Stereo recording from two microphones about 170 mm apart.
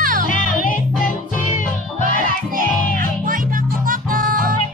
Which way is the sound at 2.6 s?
55° right (ahead or behind).